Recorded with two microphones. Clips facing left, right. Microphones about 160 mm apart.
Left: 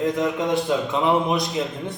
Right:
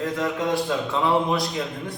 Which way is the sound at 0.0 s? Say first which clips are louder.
Left 3 dB; 20° left (ahead or behind).